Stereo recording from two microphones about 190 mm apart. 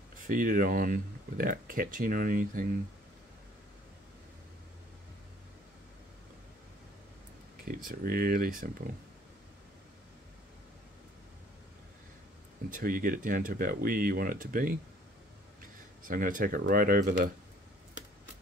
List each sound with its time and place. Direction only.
0.3 s speech: 45° right (ahead or behind)
7.6 s speech: 50° right (ahead or behind)
12.7 s speech: 45° right (ahead or behind)